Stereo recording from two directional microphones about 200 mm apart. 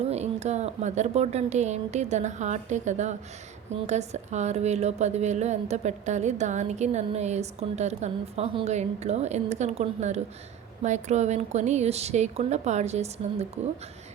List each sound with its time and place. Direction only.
0.1 s a woman's voice: 35° right (ahead or behind)